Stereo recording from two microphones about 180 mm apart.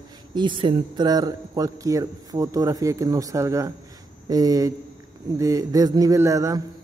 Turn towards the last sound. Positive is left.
turn(degrees=-15)  # may be behind; listen again after turning